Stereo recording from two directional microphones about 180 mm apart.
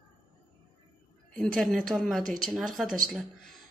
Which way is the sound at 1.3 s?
5° left (ahead or behind).